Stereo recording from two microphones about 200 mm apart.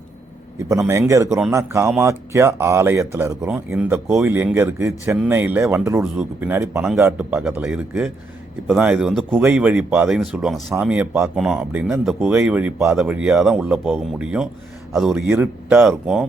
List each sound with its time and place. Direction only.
0.7 s speech: 15° right (ahead or behind)